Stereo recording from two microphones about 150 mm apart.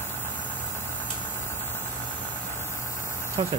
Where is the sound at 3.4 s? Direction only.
35° right (ahead or behind).